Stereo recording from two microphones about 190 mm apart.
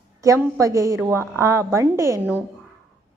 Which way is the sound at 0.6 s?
15° right (ahead or behind).